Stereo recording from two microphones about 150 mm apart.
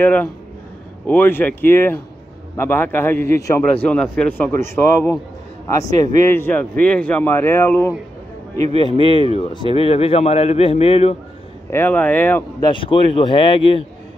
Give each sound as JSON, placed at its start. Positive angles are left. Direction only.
{"t": 0.0, "sound": "speech", "side_deg": 10}
{"t": 3.8, "sound": "speech", "side_deg": 10}
{"t": 8.7, "sound": "a man's voice", "side_deg": 35}
{"t": 11.7, "sound": "speech", "side_deg": 15}
{"t": 12.5, "sound": "a man's voice", "side_deg": 30}